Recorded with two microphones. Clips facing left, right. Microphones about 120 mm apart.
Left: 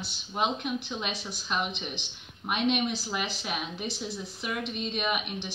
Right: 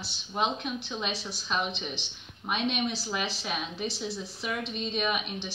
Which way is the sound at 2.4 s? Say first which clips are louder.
Left 2 dB; 10° left (ahead or behind).